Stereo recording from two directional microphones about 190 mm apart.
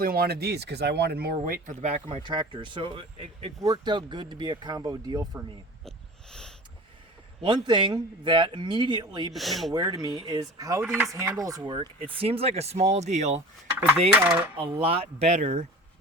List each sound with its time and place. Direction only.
0.0 s speech: 55° right (ahead or behind); by 5.4 s 20° right (ahead or behind)
7.4 s speech: 25° right (ahead or behind)
9.3 s speech: centre (ahead or behind)
9.7 s speech: 20° right (ahead or behind)
14.2 s speech: 10° right (ahead or behind)
14.6 s speech: 30° right (ahead or behind)